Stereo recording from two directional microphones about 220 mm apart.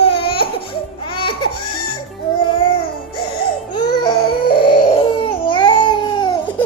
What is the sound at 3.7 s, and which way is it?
Baby cry, 20° left (ahead or behind).